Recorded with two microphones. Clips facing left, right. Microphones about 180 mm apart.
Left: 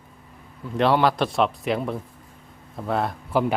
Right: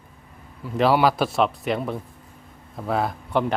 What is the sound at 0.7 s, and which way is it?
Speech, 5° right (ahead or behind).